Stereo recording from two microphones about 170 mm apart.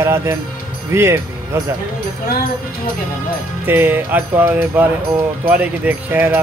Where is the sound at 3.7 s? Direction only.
10° right (ahead or behind).